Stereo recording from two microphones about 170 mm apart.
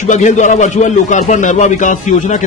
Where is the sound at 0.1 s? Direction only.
45° left (ahead or behind).